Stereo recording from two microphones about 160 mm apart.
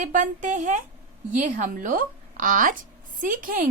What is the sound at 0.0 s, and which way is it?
A woman's voice, 50° right (ahead or behind).